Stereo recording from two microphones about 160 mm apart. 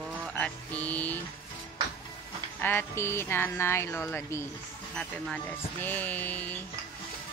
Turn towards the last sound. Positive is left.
turn(degrees=10)  # may be behind; listen again after turning